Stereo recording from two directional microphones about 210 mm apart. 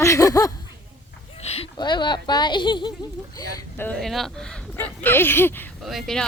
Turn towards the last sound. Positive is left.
turn(degrees=0)  # may be behind; listen again after turning